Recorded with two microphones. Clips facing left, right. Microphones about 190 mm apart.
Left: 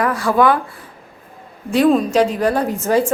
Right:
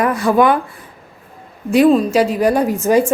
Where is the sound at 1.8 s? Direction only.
5° right (ahead or behind).